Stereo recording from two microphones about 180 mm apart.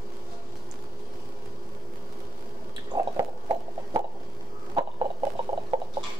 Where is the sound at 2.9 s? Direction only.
20° right (ahead or behind).